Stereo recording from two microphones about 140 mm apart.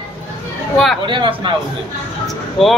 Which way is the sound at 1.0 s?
35° right (ahead or behind).